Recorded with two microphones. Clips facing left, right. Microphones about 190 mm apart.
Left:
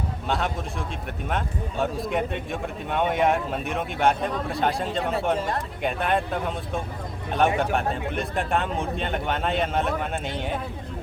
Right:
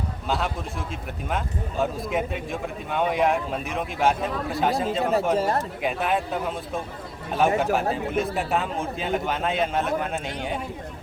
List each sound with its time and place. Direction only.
0.3 s a man's voice: centre (ahead or behind)
1.8 s a man's voice: centre (ahead or behind)
5.4 s speech: 40° right (ahead or behind)
5.8 s a man's voice: centre (ahead or behind)